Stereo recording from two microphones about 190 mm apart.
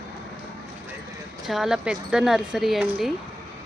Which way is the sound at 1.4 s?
Centre (ahead or behind).